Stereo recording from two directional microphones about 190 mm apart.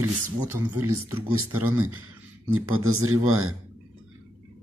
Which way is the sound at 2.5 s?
90° right.